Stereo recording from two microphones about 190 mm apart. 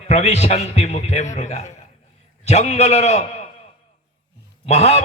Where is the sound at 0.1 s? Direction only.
35° left (ahead or behind).